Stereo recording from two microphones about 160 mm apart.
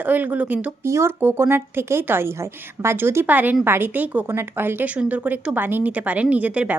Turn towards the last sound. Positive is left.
turn(degrees=-10)  # may be behind; listen again after turning